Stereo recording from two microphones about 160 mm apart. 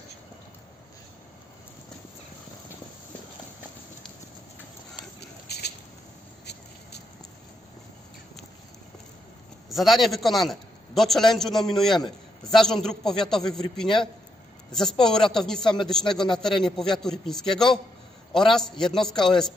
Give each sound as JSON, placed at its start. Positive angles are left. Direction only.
{"t": 5.2, "sound": "patter", "side_deg": 90}
{"t": 9.7, "sound": "a man's voice", "side_deg": 0}